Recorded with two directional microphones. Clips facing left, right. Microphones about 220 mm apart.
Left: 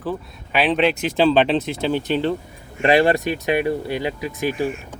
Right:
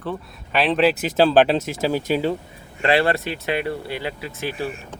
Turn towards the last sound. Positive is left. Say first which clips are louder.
# left 5 dB
turn(degrees=15)  # may be behind; listen again after turning